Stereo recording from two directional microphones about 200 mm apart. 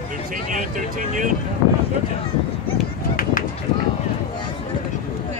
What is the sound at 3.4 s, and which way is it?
Run, 45° left (ahead or behind).